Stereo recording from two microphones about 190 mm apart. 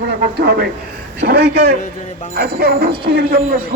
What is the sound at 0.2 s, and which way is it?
A man's voice, 55° right (ahead or behind).